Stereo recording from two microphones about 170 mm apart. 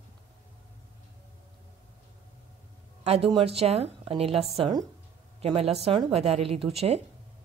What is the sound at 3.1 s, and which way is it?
Speech, 35° right (ahead or behind).